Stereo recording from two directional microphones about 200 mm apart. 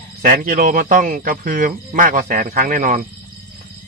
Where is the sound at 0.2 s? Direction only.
45° right (ahead or behind).